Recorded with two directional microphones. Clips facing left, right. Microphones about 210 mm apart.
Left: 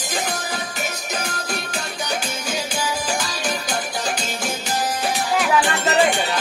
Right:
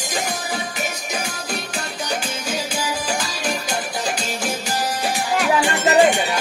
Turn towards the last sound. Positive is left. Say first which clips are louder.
# right 2 dB
turn(degrees=-15)  # may be behind; listen again after turning